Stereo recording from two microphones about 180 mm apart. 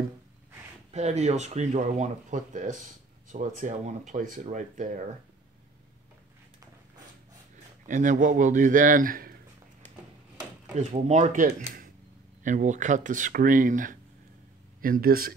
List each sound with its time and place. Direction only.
0.9 s speech: 40° right (ahead or behind)
7.8 s speech: 45° right (ahead or behind)
10.8 s speech: 40° right (ahead or behind); by 15.3 s 55° right (ahead or behind)